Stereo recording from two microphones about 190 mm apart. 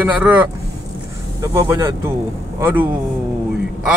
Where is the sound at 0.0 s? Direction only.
10° right (ahead or behind).